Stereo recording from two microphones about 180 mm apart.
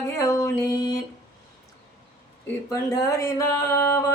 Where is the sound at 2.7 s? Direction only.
15° left (ahead or behind).